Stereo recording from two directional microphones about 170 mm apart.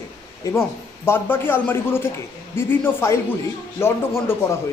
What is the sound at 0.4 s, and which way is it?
A woman's voice, 20° left (ahead or behind).